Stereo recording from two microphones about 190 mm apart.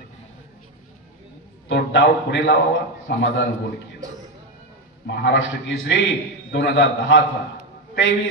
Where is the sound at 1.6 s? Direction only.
70° left (ahead or behind).